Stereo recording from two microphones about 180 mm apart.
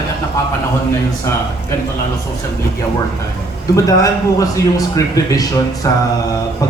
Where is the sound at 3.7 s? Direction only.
20° left (ahead or behind).